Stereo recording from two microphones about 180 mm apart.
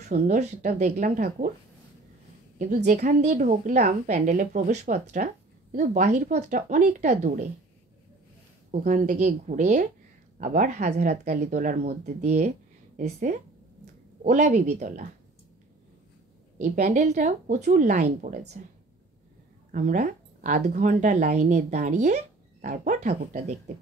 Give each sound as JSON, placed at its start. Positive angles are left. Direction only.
{"t": 0.1, "sound": "a woman's voice", "side_deg": -40}
{"t": 2.6, "sound": "a woman's voice", "side_deg": -45}
{"t": 8.8, "sound": "a woman's voice", "side_deg": -45}
{"t": 16.5, "sound": "a woman's voice", "side_deg": -40}
{"t": 19.7, "sound": "a woman's voice", "side_deg": -45}